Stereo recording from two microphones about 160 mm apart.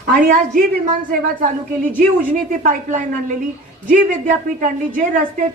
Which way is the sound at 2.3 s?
55° right (ahead or behind).